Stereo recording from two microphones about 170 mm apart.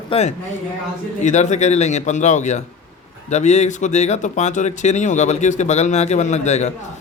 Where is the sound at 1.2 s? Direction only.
45° left (ahead or behind).